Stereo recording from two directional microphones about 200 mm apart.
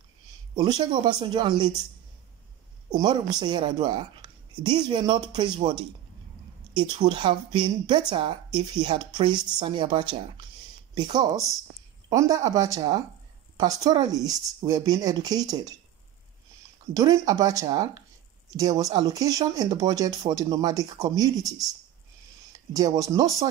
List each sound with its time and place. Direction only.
0.6 s a woman's voice: 20° right (ahead or behind)
2.9 s a woman's voice: 20° right (ahead or behind)
16.9 s a woman's voice: 20° right (ahead or behind)